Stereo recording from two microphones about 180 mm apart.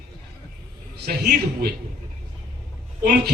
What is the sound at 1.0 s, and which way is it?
Speech, 60° right (ahead or behind).